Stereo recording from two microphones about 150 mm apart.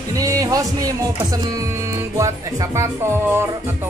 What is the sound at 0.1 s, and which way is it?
Speech, 25° right (ahead or behind).